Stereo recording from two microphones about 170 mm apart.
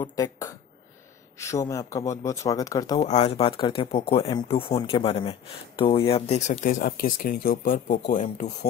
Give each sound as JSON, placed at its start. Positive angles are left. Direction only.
{"t": 0.0, "sound": "speech", "side_deg": 20}
{"t": 3.0, "sound": "speech", "side_deg": 40}